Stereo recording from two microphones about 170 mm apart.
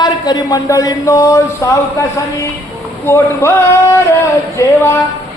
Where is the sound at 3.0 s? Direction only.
15° left (ahead or behind).